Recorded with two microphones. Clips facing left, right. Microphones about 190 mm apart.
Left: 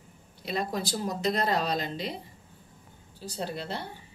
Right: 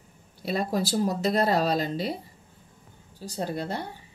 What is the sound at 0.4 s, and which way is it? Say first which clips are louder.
Speech: right 4 dB; 45° right (ahead or behind).